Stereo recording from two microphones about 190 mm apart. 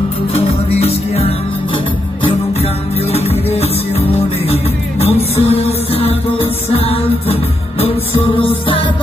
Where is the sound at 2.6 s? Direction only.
35° left (ahead or behind).